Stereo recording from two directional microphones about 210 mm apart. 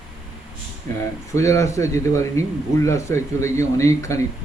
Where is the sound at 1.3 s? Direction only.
15° left (ahead or behind).